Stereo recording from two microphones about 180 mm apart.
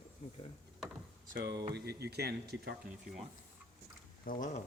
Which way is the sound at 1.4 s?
65° right (ahead or behind).